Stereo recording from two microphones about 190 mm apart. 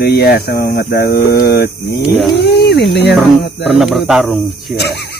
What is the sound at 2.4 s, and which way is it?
Cat, 60° left (ahead or behind).